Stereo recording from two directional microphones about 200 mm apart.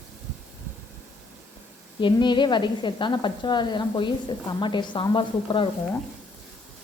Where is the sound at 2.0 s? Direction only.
25° left (ahead or behind).